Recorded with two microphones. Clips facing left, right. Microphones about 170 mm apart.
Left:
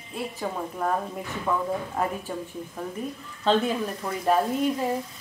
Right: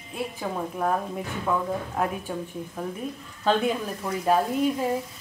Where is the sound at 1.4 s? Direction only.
Centre (ahead or behind).